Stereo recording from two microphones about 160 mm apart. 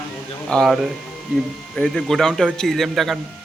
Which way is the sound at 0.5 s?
Centre (ahead or behind).